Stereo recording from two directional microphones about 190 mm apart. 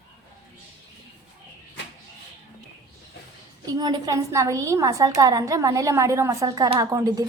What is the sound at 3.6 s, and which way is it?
Speech, 20° right (ahead or behind).